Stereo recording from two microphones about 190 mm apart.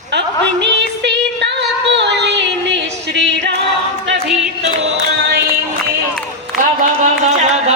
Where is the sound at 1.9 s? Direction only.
65° right (ahead or behind).